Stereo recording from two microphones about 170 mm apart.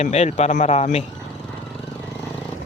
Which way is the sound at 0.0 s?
40° left (ahead or behind).